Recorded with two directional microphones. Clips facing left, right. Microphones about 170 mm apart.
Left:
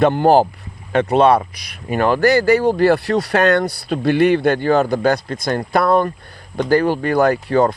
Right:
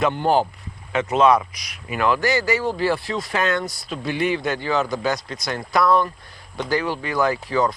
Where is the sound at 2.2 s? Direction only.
60° left (ahead or behind).